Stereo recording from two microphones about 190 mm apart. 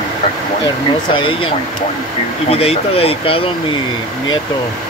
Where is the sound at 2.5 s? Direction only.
30° left (ahead or behind).